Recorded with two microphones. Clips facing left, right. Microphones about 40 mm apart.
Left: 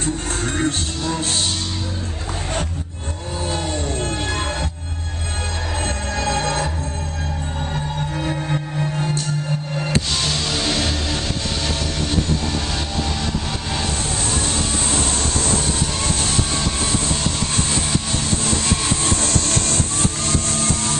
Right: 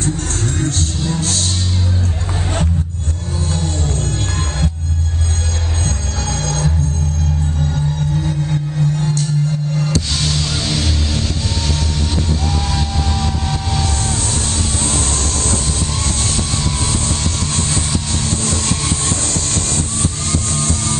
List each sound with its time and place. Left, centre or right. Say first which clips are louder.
0.6 s music: right 1 dB; left
3.5 s music: right 1 dB; left
5.9 s music: left 1 dB; left
8.1 s music: right 3 dB; left
10.2 s music: right 1 dB; centre
12.7 s vehicle: right 3 dB; centre
20.2 s music: right 1 dB; left